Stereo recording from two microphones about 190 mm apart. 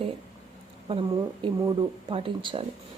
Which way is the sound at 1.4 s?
25° right (ahead or behind).